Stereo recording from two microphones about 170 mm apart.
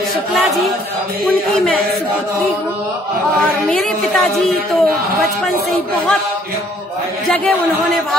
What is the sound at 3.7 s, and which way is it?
Speech, centre (ahead or behind).